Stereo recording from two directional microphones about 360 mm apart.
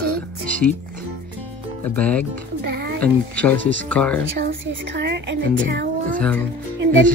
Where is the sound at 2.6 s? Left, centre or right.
Right.